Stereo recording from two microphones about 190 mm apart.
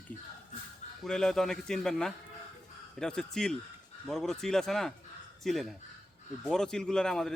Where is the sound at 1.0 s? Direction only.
Centre (ahead or behind).